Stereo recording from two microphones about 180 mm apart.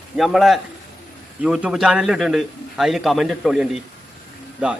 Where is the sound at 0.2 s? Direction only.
Centre (ahead or behind).